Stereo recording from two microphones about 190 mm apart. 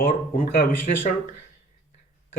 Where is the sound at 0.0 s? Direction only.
50° left (ahead or behind).